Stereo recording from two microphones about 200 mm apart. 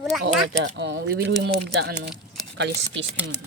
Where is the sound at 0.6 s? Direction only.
60° right (ahead or behind).